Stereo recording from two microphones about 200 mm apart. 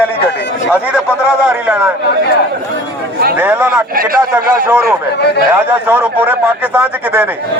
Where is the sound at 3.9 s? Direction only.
45° right (ahead or behind).